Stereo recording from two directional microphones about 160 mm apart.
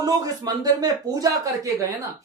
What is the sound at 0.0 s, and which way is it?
Speech, 20° right (ahead or behind).